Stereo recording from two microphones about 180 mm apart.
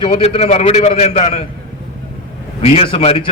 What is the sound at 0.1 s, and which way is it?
A man's voice, 35° left (ahead or behind).